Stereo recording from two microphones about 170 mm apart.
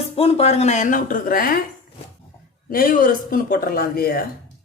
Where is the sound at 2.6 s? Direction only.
55° left (ahead or behind).